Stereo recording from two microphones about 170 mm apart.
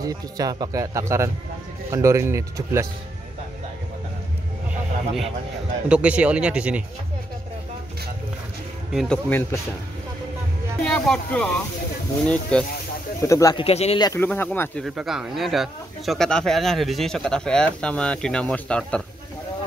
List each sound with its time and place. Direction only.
0.0 s speech: 20° right (ahead or behind)
5.9 s speech: 5° right (ahead or behind)
8.9 s speech: 5° left (ahead or behind)
10.8 s speech: 5° left (ahead or behind)
13.3 s speech: 20° left (ahead or behind)
13.7 s speech: 35° left (ahead or behind)
13.9 s speech: 25° left (ahead or behind)
14.2 s speech: 10° left (ahead or behind)
14.9 s speech: 5° right (ahead or behind)